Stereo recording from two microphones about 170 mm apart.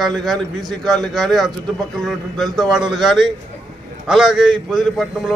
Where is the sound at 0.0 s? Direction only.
Centre (ahead or behind).